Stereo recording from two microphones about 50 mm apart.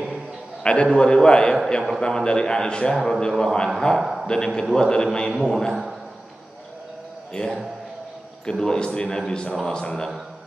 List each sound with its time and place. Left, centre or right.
0.8 s a man's voice: centre
4.0 s a sound: centre
4.3 s a man's voice: centre
5.7 s a man's voice: centre
7.4 s a man's voice: centre